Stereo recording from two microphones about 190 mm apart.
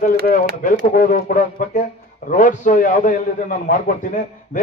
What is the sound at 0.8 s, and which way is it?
A man's voice, 45° left (ahead or behind).